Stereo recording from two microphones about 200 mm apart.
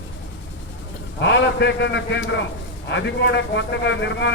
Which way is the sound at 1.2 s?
60° left (ahead or behind).